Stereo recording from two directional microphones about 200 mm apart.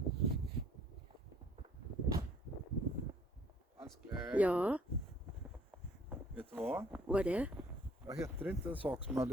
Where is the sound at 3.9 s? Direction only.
5° right (ahead or behind).